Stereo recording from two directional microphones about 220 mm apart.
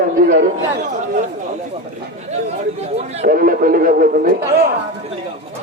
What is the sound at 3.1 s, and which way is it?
A man's voice, 40° right (ahead or behind).